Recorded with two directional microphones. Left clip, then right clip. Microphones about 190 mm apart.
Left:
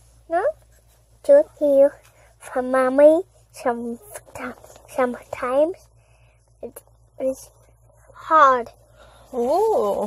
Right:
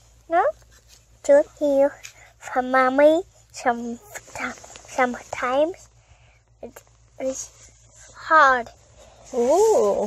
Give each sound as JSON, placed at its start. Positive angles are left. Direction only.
{"t": 0.3, "sound": "speech", "side_deg": 20}
{"t": 4.1, "sound": "a sound", "side_deg": 35}
{"t": 4.9, "sound": "speech", "side_deg": 35}
{"t": 6.6, "sound": "a sound", "side_deg": 35}
{"t": 8.1, "sound": "a woman's voice", "side_deg": 40}
{"t": 9.3, "sound": "speech", "side_deg": 0}